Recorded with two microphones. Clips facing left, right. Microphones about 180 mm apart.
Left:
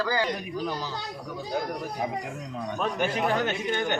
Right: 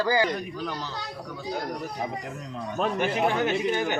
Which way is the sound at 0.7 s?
10° left (ahead or behind).